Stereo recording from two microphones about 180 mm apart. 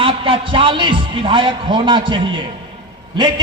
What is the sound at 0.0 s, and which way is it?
A man's voice, 30° right (ahead or behind).